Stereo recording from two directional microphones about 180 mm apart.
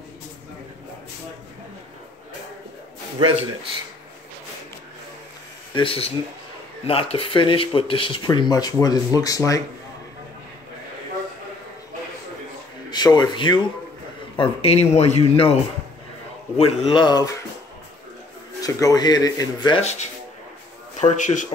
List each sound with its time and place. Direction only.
5.8 s speech: 30° left (ahead or behind)
12.9 s speech: 25° left (ahead or behind)
16.5 s speech: 35° left (ahead or behind)
18.6 s speech: 20° left (ahead or behind)
19.8 s a man's voice: 35° left (ahead or behind)